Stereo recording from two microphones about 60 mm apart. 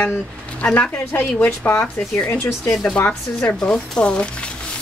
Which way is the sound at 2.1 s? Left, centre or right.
Left.